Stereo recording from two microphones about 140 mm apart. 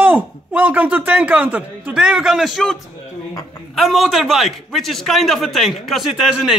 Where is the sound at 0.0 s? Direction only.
10° right (ahead or behind).